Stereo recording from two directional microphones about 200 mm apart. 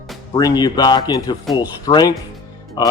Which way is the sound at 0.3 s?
20° left (ahead or behind).